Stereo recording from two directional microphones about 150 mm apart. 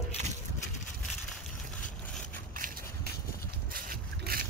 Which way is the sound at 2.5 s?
75° right (ahead or behind).